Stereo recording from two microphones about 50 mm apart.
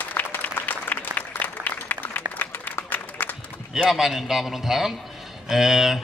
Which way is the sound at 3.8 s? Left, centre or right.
Centre.